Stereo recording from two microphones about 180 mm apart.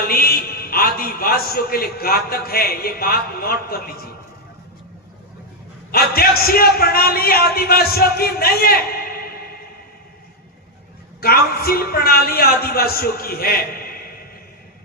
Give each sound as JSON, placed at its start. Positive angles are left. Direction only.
{"t": 0.1, "sound": "a man's voice", "side_deg": 60}
{"t": 5.9, "sound": "a man's voice", "side_deg": 55}
{"t": 11.2, "sound": "a man's voice", "side_deg": 55}